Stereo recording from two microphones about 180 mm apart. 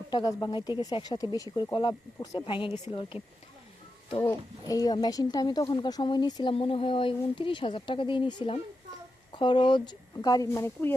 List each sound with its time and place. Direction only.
0.1 s speech: 20° left (ahead or behind)
4.2 s speech: 20° left (ahead or behind)